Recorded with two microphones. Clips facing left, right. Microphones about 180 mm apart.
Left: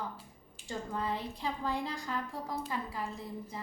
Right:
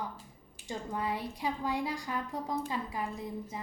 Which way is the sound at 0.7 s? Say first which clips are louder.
Right 1 dB; 15° right (ahead or behind).